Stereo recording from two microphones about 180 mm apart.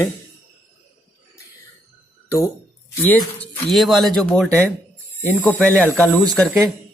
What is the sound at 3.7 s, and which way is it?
Speech, centre (ahead or behind).